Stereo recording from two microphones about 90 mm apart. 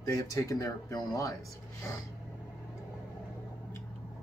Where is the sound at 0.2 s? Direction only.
40° left (ahead or behind).